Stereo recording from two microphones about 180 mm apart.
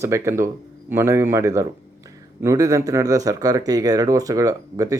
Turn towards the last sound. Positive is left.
turn(degrees=-20)  # may be behind; listen again after turning